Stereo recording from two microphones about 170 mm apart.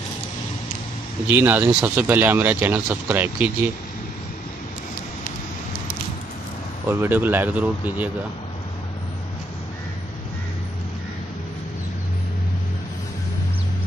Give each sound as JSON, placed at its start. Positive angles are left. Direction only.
{"t": 1.2, "sound": "speech", "side_deg": -10}
{"t": 6.9, "sound": "speech", "side_deg": -10}